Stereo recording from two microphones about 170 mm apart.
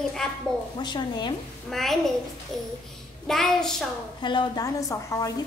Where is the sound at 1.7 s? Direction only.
Centre (ahead or behind).